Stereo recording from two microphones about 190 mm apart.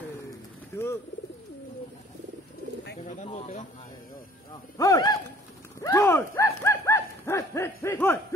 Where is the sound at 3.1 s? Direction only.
40° left (ahead or behind).